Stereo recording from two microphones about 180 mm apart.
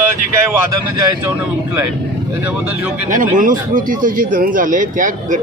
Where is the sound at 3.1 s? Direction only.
50° right (ahead or behind).